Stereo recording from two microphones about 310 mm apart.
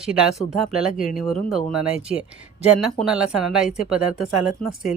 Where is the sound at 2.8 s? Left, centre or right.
Centre.